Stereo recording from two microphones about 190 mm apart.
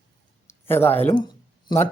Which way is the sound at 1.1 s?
20° left (ahead or behind).